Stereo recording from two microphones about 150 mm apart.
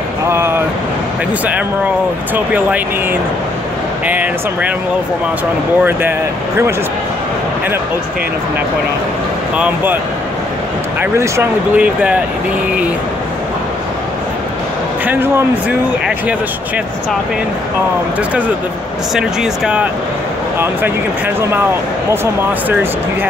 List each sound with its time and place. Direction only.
0.3 s speech: 15° right (ahead or behind)
2.3 s speech: 10° right (ahead or behind)
11.0 s speech: 15° right (ahead or behind)
15.0 s speech: 15° right (ahead or behind)
19.1 s speech: 5° right (ahead or behind)
22.1 s speech: 15° right (ahead or behind)